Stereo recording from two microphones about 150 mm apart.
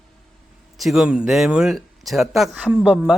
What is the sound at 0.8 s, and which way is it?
Speech, centre (ahead or behind).